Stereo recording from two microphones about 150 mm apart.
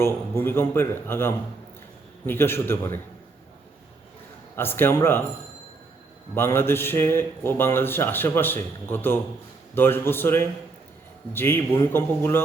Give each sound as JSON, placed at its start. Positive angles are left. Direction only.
{"t": 0.0, "sound": "a man's voice", "side_deg": 15}
{"t": 4.5, "sound": "a man's voice", "side_deg": 15}
{"t": 6.3, "sound": "a man's voice", "side_deg": 15}